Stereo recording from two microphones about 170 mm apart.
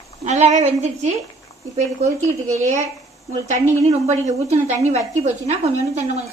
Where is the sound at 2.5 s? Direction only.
45° right (ahead or behind).